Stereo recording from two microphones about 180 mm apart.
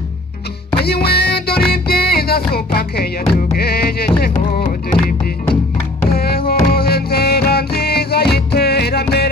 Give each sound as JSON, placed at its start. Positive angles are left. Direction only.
{"t": 0.7, "sound": "music", "side_deg": 65}
{"t": 6.1, "sound": "music", "side_deg": 55}